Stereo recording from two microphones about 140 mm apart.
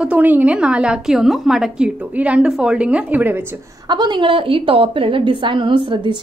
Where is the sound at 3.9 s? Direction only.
35° right (ahead or behind).